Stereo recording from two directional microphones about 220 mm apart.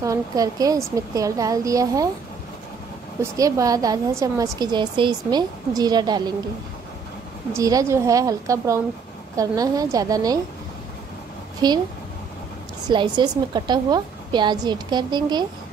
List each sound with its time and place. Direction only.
0.0 s a woman's voice: 15° right (ahead or behind)
3.2 s a woman's voice: 15° right (ahead or behind)
7.5 s a woman's voice: 15° right (ahead or behind)
11.6 s a woman's voice: 20° right (ahead or behind)
12.8 s a woman's voice: 20° right (ahead or behind)